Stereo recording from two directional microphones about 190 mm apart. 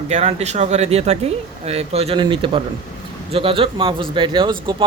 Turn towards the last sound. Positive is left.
turn(degrees=-25)  # may be behind; listen again after turning